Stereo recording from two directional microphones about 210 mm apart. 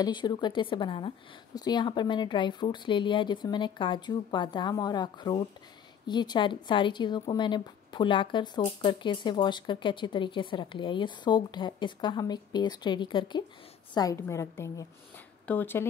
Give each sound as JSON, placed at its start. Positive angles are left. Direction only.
{"t": 0.0, "sound": "a woman's voice", "side_deg": 20}